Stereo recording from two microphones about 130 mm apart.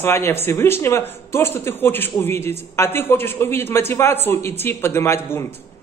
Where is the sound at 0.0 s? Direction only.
20° left (ahead or behind).